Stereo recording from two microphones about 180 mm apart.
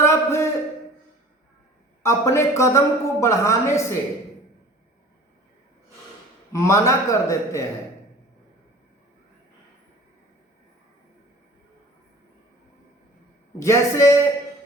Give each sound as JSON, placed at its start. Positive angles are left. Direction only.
{"t": 0.0, "sound": "a sound", "side_deg": 15}
{"t": 2.0, "sound": "a woman's voice", "side_deg": 15}
{"t": 6.5, "sound": "a woman's voice", "side_deg": 15}
{"t": 13.6, "sound": "a woman's voice", "side_deg": 15}